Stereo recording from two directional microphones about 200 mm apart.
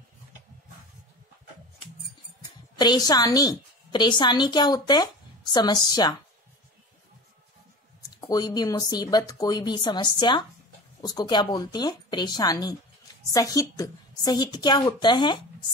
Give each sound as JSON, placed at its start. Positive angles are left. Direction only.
{"t": 2.8, "sound": "a woman's voice", "side_deg": 20}
{"t": 8.2, "sound": "speech", "side_deg": 20}